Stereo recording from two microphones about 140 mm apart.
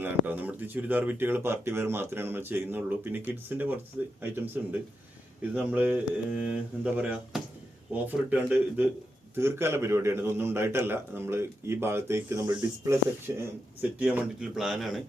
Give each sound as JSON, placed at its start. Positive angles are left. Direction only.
{"t": 0.0, "sound": "a man's voice", "side_deg": -15}